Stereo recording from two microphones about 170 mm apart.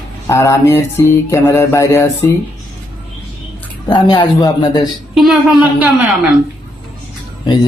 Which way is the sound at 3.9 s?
25° left (ahead or behind).